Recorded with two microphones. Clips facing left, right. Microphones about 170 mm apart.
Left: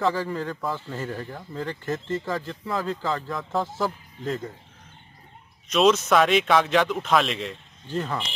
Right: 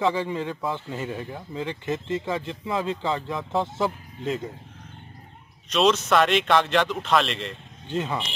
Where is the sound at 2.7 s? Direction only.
20° right (ahead or behind).